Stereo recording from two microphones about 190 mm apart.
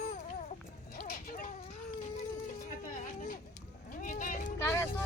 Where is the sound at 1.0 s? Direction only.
50° left (ahead or behind).